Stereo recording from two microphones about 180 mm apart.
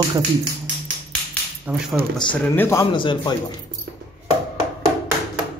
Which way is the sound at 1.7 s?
10° right (ahead or behind).